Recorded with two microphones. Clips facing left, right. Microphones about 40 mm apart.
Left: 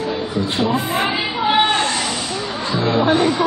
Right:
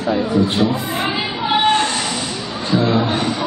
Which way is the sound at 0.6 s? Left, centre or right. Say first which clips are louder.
Left 1 dB; left.